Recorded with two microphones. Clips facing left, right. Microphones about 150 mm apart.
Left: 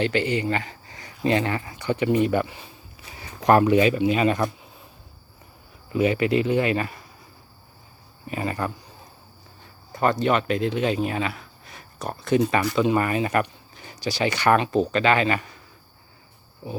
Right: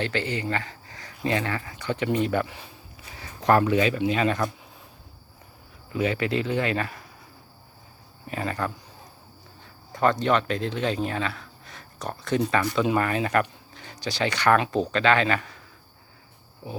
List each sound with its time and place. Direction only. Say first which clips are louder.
0.0 s speech: left 5 dB; 15° left (ahead or behind)
5.9 s speech: left 4 dB; 10° left (ahead or behind)
8.3 s speech: left 2 dB; 10° left (ahead or behind)
9.9 s speech: left 1 dB; 5° left (ahead or behind)
12.7 s speech: left 2 dB; centre (ahead or behind)
16.6 s speech: left 3 dB; centre (ahead or behind)